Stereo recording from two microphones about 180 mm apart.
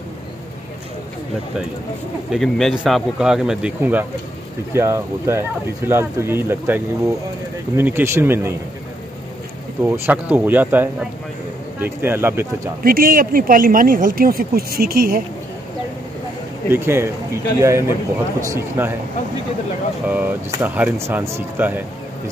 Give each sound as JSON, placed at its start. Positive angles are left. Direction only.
{"t": 2.3, "sound": "a man's voice", "side_deg": 0}
{"t": 9.8, "sound": "speech", "side_deg": -10}
{"t": 12.8, "sound": "a woman's voice", "side_deg": -55}
{"t": 16.6, "sound": "speech", "side_deg": -15}
{"t": 20.1, "sound": "speech", "side_deg": -10}